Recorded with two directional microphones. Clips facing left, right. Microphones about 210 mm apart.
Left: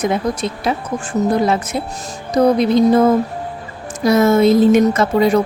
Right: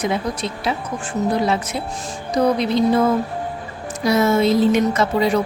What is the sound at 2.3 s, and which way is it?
A woman's voice, 45° left (ahead or behind).